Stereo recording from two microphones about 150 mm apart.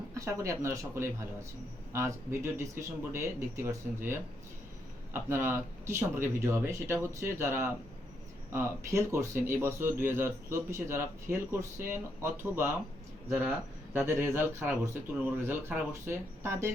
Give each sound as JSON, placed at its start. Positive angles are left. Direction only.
{"t": 0.1, "sound": "speech", "side_deg": -20}
{"t": 13.9, "sound": "speech", "side_deg": -15}